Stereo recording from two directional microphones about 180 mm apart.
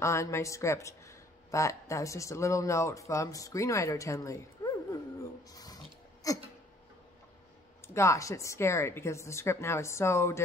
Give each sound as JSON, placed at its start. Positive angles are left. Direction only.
{"t": 0.0, "sound": "speech", "side_deg": 15}
{"t": 5.5, "sound": "a sound", "side_deg": 20}
{"t": 7.8, "sound": "speech", "side_deg": 15}